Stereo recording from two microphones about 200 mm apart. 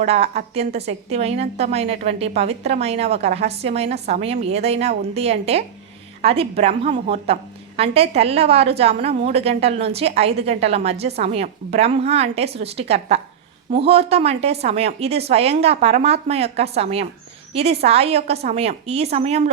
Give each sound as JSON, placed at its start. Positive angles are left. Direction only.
{"t": 0.0, "sound": "a woman's voice", "side_deg": -35}